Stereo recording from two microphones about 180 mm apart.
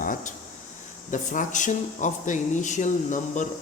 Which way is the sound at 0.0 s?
50° left (ahead or behind).